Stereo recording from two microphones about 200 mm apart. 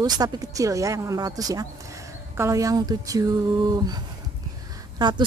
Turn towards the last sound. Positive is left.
turn(degrees=-20)  # may be behind; listen again after turning